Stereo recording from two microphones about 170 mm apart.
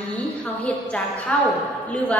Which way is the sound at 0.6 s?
5° left (ahead or behind).